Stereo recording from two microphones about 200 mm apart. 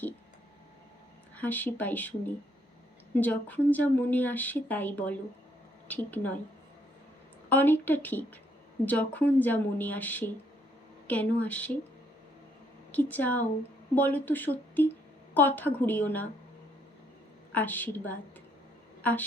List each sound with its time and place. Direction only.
1.4 s a woman's voice: 10° left (ahead or behind)
7.5 s a woman's voice: 10° left (ahead or behind)
12.9 s a woman's voice: 10° left (ahead or behind)
17.5 s a woman's voice: 10° left (ahead or behind)